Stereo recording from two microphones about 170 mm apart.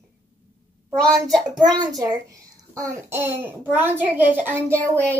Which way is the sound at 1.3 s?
5° left (ahead or behind).